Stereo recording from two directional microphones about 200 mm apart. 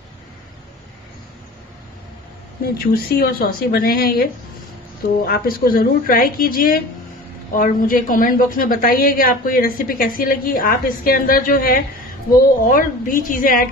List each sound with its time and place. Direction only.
2.6 s a woman's voice: 50° left (ahead or behind)